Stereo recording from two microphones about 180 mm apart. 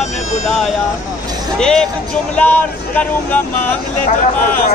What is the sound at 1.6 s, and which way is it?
Speech, 5° left (ahead or behind).